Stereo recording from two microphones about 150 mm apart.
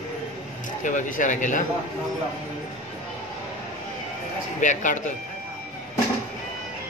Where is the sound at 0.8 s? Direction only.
60° left (ahead or behind).